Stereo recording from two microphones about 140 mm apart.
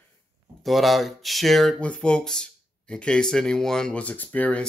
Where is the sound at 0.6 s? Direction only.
Centre (ahead or behind).